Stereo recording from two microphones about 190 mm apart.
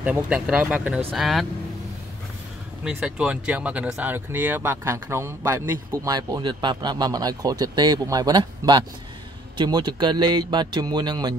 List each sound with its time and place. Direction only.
0.0 s speech: 5° right (ahead or behind)
2.8 s speech: 5° right (ahead or behind); by 11.3 s 20° right (ahead or behind)